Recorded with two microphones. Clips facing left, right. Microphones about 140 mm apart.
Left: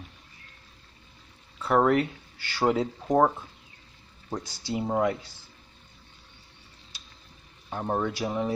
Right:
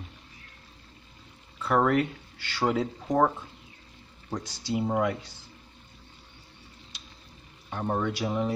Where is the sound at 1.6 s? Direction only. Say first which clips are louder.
Left 2 dB; 20° left (ahead or behind).